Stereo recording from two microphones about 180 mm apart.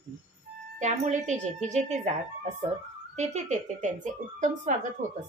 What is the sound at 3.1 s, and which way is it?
Speech, 40° right (ahead or behind).